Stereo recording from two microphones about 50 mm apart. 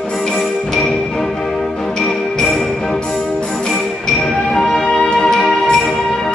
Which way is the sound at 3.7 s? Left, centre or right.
Centre.